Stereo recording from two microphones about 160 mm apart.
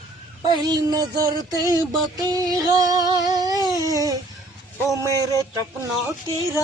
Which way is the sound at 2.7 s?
25° right (ahead or behind).